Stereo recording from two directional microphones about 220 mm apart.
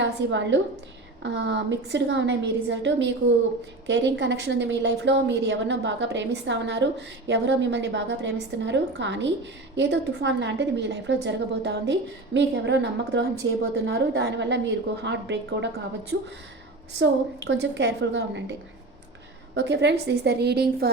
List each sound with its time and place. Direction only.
0.0 s a woman's voice: 55° right (ahead or behind)
19.5 s a woman's voice: 50° right (ahead or behind)